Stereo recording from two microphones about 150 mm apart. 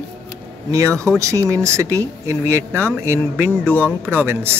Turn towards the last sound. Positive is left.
turn(degrees=-15)  # may be behind; listen again after turning